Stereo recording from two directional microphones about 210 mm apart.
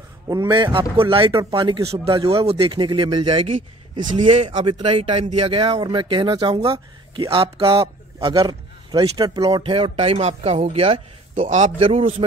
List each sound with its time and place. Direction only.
0.3 s a man's voice: 20° right (ahead or behind)